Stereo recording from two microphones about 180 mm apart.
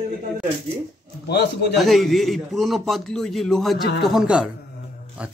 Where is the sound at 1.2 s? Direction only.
65° left (ahead or behind).